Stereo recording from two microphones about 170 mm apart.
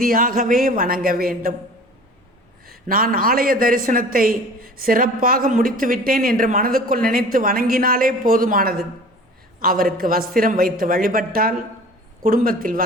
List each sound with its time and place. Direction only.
0.0 s a man's voice: 55° right (ahead or behind)
2.6 s a man's voice: 55° right (ahead or behind)